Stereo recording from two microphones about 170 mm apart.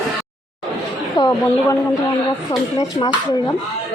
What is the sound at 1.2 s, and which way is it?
Speech, 20° left (ahead or behind).